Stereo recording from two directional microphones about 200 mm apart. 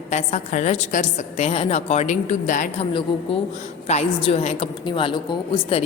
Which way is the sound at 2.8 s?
25° left (ahead or behind).